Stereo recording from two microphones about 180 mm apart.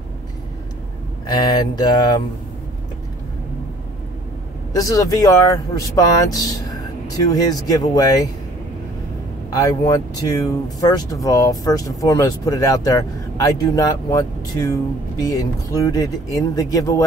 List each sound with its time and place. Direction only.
1.2 s speech: 25° left (ahead or behind)
4.7 s speech: 20° left (ahead or behind)
9.5 s speech: 20° left (ahead or behind)